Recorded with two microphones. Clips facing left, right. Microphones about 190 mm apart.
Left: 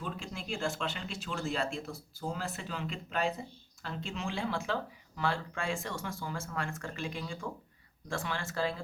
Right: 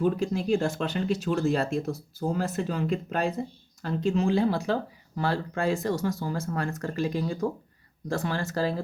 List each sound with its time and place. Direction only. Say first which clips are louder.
0.0 s speech: right 15 dB; 40° right (ahead or behind)